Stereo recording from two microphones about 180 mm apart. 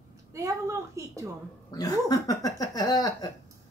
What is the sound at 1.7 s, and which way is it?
Speech, 20° left (ahead or behind).